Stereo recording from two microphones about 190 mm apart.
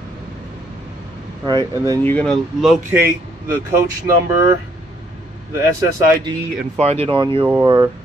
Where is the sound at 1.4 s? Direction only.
20° right (ahead or behind).